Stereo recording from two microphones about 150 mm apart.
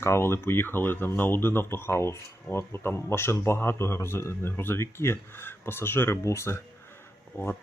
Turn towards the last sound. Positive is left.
turn(degrees=15)  # may be behind; listen again after turning